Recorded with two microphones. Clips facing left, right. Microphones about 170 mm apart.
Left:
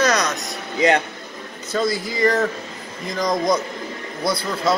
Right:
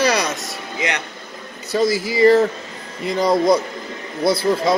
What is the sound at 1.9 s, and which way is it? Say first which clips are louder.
Speech: right 5 dB; 5° right (ahead or behind).